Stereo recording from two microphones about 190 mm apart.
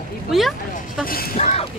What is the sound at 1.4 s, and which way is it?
Speech, 35° left (ahead or behind).